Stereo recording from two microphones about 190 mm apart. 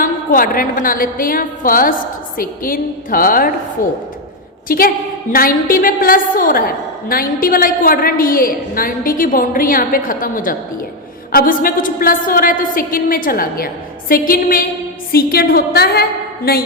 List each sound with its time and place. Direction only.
0.0 s a sound: 50° left (ahead or behind)
0.8 s a woman's voice: 45° left (ahead or behind)
3.8 s speech: 15° left (ahead or behind)
4.7 s a woman's voice: 50° left (ahead or behind)